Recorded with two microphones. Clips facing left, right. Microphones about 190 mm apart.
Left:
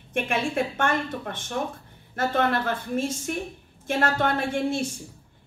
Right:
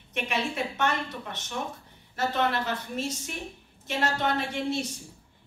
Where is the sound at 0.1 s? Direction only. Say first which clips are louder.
Left 5 dB; 50° left (ahead or behind).